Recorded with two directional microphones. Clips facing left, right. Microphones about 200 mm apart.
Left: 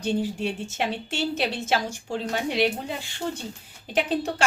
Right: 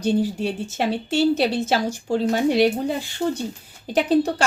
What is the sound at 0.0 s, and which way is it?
A woman's voice, 40° right (ahead or behind).